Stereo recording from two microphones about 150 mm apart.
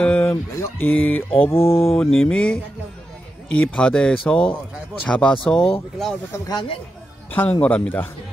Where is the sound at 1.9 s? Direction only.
5° left (ahead or behind).